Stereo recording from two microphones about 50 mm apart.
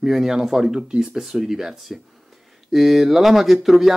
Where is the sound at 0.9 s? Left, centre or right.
Centre.